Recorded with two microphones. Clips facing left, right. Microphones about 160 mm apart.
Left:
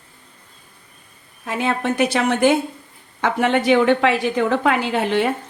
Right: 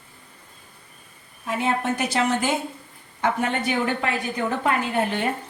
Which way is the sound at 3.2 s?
90° left.